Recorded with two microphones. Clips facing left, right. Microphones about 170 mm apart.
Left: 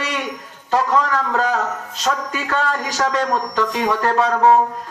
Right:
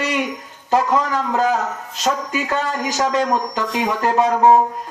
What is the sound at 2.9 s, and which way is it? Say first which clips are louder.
A man's voice: right 2 dB; 20° right (ahead or behind).